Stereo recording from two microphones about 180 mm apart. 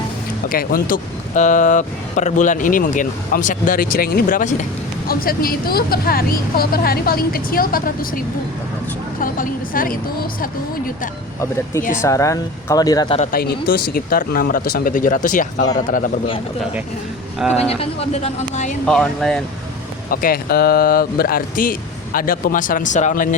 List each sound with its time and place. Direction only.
0.4 s speech: 50° left (ahead or behind)
9.2 s speech: 50° left (ahead or behind)
12.0 s speech: 15° left (ahead or behind)
13.3 s speech: 55° left (ahead or behind)
17.5 s speech: 35° left (ahead or behind)
18.9 s speech: 5° left (ahead or behind)
20.1 s speech: 55° left (ahead or behind)